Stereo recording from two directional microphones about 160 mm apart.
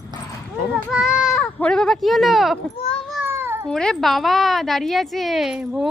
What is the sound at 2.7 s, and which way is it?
Baby cry, 40° left (ahead or behind).